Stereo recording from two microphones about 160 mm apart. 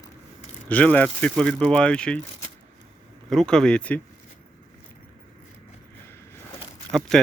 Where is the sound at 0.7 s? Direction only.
10° left (ahead or behind).